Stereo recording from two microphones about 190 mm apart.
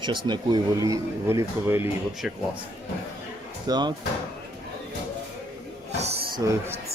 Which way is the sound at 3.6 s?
20° right (ahead or behind).